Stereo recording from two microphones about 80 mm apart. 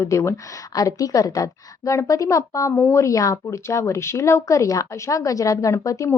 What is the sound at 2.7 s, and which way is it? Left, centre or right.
A woman's voice, left.